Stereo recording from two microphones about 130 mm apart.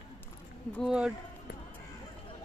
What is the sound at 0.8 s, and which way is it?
Speech, 5° right (ahead or behind).